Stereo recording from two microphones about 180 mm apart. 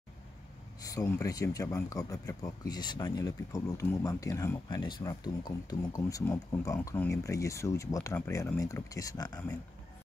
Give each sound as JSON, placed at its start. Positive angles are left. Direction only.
{"t": 0.7, "sound": "speech", "side_deg": 20}